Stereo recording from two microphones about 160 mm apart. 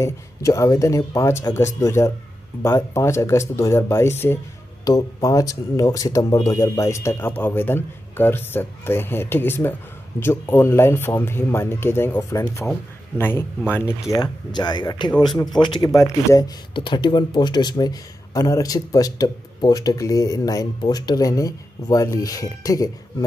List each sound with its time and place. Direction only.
0.0 s speech: 20° left (ahead or behind)
14.2 s speech: 25° left (ahead or behind)